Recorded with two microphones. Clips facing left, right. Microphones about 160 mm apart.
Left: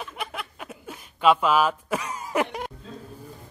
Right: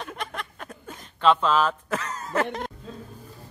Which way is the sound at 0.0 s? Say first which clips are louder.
Even; 5° left (ahead or behind).